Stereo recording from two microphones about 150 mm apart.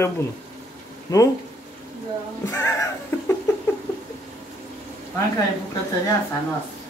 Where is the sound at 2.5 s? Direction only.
20° left (ahead or behind).